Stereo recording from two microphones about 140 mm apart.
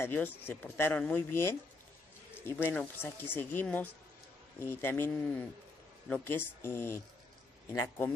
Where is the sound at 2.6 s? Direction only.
10° left (ahead or behind).